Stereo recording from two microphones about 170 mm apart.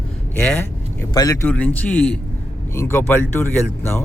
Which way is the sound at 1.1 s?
20° left (ahead or behind).